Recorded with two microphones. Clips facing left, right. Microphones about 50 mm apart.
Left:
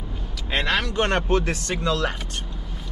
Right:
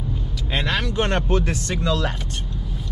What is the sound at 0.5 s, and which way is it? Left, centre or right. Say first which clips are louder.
Speech: left 1 dB; centre.